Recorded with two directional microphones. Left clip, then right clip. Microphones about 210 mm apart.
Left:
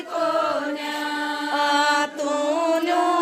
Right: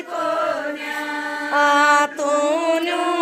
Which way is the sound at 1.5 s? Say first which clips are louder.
Right 6 dB; 25° right (ahead or behind).